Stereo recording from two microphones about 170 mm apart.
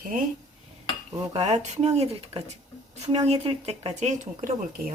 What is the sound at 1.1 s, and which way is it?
Speech, 40° right (ahead or behind).